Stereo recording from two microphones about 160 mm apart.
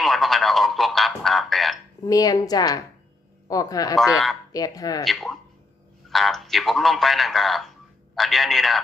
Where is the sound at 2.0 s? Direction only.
20° left (ahead or behind).